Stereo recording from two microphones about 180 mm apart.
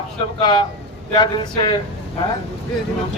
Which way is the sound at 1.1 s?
25° left (ahead or behind).